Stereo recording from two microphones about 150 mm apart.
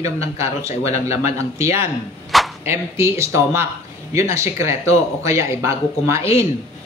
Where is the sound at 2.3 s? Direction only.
Centre (ahead or behind).